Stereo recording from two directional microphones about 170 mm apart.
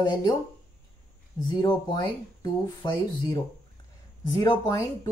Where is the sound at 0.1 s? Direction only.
25° left (ahead or behind).